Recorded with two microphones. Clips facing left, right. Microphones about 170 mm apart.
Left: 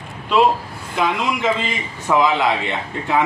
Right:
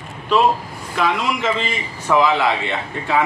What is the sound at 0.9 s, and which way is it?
Speech, 20° left (ahead or behind).